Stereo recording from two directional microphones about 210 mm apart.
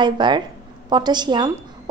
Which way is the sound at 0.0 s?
20° right (ahead or behind).